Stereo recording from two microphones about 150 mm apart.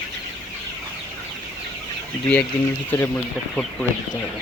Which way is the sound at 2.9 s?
10° left (ahead or behind).